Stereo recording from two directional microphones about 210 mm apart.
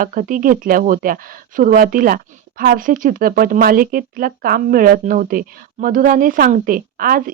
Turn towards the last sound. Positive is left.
turn(degrees=-45)  # may be behind; listen again after turning